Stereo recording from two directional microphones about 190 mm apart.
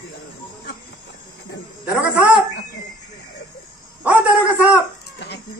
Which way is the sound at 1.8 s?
5° right (ahead or behind).